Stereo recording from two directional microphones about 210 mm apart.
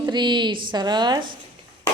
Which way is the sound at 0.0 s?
20° right (ahead or behind).